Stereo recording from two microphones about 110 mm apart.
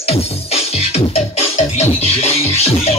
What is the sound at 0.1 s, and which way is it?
Music, 65° left (ahead or behind).